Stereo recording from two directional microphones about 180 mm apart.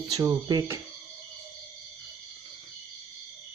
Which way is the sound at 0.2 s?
20° right (ahead or behind).